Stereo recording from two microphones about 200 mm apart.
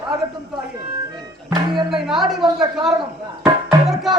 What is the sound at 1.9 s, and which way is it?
Music, centre (ahead or behind).